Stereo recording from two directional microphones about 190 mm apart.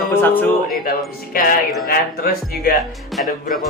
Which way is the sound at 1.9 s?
50° left (ahead or behind).